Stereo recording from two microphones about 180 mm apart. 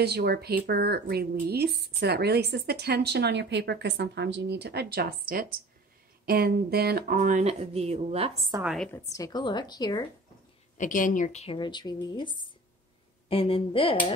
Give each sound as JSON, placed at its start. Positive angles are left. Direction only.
{"t": 0.0, "sound": "speech", "side_deg": -65}
{"t": 8.6, "sound": "a woman's voice", "side_deg": 5}
{"t": 9.1, "sound": "a woman's voice", "side_deg": 20}
{"t": 10.8, "sound": "a woman's voice", "side_deg": 45}